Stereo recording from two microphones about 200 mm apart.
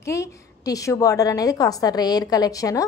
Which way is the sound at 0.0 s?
15° left (ahead or behind).